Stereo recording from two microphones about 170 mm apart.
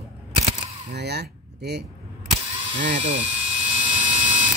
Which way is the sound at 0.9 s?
75° right (ahead or behind).